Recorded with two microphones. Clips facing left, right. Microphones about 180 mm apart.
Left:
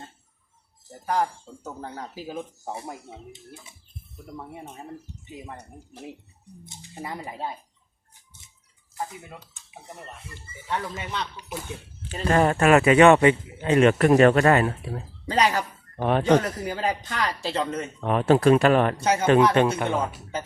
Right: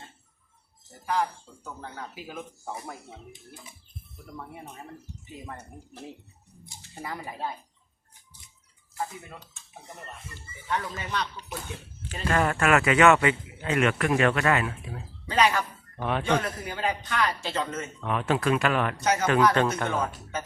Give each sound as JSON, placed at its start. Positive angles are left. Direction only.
{"t": 1.0, "sound": "speech", "side_deg": 45}
{"t": 5.3, "sound": "speech", "side_deg": 15}
{"t": 10.7, "sound": "speech", "side_deg": 25}
{"t": 11.3, "sound": "speech", "side_deg": 5}
{"t": 12.1, "sound": "speech", "side_deg": 35}